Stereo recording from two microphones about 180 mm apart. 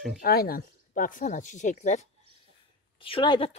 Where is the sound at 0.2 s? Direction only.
55° left (ahead or behind); by 2.0 s 40° left (ahead or behind).